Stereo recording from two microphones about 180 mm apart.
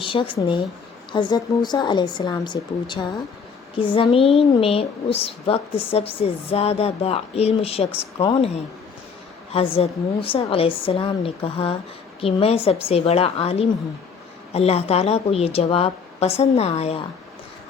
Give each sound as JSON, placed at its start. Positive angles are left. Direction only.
{"t": 0.0, "sound": "a woman's voice", "side_deg": 30}
{"t": 9.5, "sound": "a woman's voice", "side_deg": 30}